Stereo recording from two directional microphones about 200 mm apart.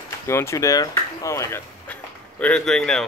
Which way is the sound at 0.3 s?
15° left (ahead or behind).